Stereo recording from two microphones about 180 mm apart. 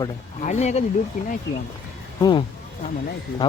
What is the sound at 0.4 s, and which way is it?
Speech, 40° left (ahead or behind).